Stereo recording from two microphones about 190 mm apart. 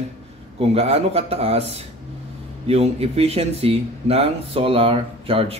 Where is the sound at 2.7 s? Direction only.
30° right (ahead or behind).